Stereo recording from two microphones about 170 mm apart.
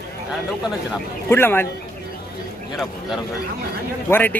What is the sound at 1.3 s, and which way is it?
Speech, 15° left (ahead or behind).